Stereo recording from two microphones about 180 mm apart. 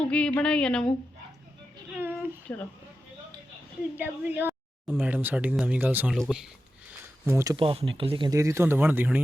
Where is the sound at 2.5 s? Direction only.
10° left (ahead or behind).